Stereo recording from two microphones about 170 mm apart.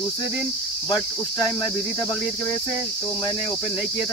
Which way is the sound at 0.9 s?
25° left (ahead or behind).